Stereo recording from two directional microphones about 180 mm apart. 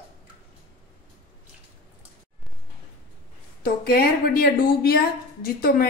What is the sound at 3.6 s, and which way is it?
A woman's voice, 55° left (ahead or behind).